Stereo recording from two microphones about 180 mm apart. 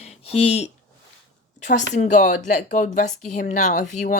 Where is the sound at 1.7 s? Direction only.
40° left (ahead or behind).